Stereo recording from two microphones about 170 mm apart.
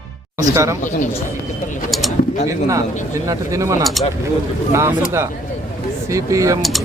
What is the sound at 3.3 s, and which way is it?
Speech, 20° right (ahead or behind).